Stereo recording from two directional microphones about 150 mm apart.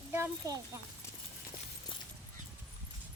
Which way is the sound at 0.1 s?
20° right (ahead or behind).